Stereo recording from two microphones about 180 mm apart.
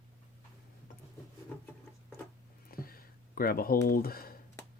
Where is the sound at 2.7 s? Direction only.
55° left (ahead or behind).